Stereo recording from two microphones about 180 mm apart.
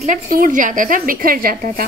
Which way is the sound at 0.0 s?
50° right (ahead or behind).